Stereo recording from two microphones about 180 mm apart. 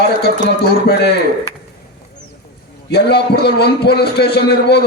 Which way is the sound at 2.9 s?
65° left (ahead or behind).